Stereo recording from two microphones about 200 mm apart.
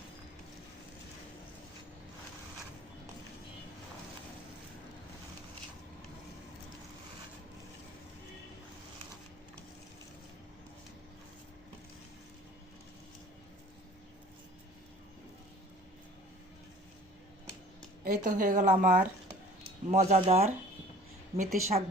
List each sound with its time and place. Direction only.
18.0 s a woman's voice: 40° right (ahead or behind)